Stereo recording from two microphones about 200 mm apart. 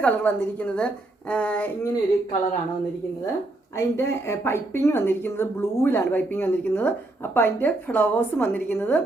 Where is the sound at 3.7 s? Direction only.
15° left (ahead or behind).